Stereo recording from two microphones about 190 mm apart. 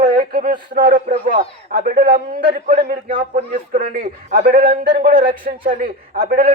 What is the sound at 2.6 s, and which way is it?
Speech, 40° right (ahead or behind).